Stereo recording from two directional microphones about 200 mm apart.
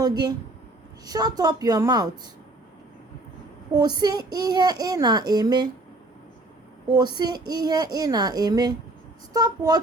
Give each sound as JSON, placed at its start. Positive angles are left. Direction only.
{"t": 0.0, "sound": "a child's voice", "side_deg": -20}
{"t": 3.7, "sound": "a child's voice", "side_deg": -20}
{"t": 6.9, "sound": "a child's voice", "side_deg": -20}